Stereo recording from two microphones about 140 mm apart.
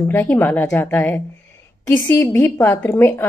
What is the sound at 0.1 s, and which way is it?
A woman's voice, 15° left (ahead or behind).